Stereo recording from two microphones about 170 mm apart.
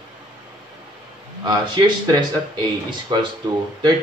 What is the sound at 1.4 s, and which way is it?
A man's voice, 25° right (ahead or behind).